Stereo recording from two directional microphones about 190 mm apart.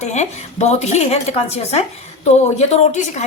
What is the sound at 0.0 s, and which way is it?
A woman's voice, 35° left (ahead or behind).